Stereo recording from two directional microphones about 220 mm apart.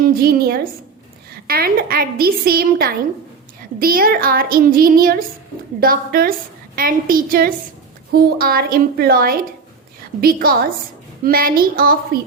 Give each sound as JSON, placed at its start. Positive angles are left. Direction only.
{"t": 0.2, "sound": "a woman's voice", "side_deg": -45}